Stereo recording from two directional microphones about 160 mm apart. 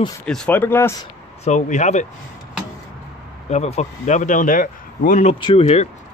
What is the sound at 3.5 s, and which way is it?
Speech, 45° left (ahead or behind).